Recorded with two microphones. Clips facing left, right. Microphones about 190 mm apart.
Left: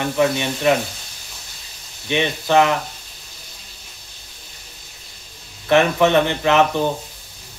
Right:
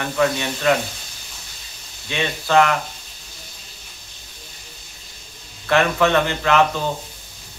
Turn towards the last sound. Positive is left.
turn(degrees=20)  # may be behind; listen again after turning